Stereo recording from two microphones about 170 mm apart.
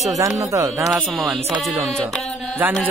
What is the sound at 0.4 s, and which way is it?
Speech, 20° right (ahead or behind).